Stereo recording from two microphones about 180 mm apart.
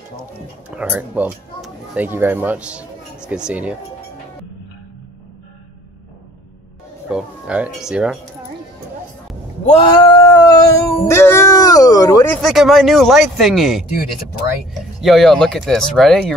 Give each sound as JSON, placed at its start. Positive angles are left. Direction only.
{"t": 0.7, "sound": "speech", "side_deg": -5}
{"t": 7.1, "sound": "speech", "side_deg": -5}
{"t": 9.8, "sound": "speech", "side_deg": 25}
{"t": 12.4, "sound": "speech", "side_deg": 0}